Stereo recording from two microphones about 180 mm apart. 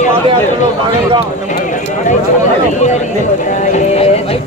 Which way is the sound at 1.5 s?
45° left (ahead or behind).